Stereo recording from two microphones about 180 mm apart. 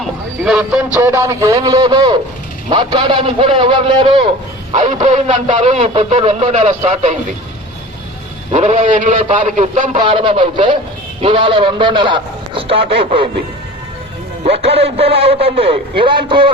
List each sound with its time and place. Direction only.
0.0 s a sound: 5° right (ahead or behind)
0.9 s a man's voice: 15° right (ahead or behind)
4.7 s speech: 40° right (ahead or behind)
8.5 s a man's voice: 40° right (ahead or behind)
10.0 s a man's voice: 30° right (ahead or behind)
14.4 s speech: 35° right (ahead or behind)